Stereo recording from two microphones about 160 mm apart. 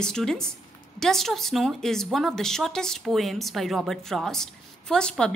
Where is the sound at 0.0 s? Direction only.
5° left (ahead or behind).